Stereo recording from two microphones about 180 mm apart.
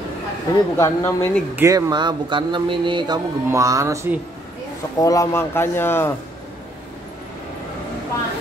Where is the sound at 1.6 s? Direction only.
20° right (ahead or behind).